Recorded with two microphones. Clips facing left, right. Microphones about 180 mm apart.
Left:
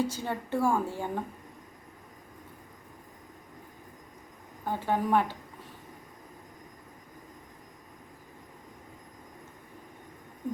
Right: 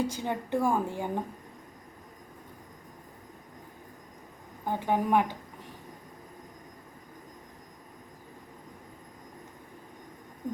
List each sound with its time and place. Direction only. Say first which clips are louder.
0.0 s a woman's voice: even; 15° right (ahead or behind)
4.6 s a woman's voice: right 1 dB; 15° right (ahead or behind)